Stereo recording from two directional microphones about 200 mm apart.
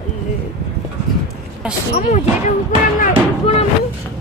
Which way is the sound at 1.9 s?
35° left (ahead or behind).